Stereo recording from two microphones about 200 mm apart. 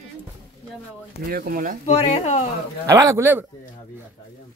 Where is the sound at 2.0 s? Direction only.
35° left (ahead or behind).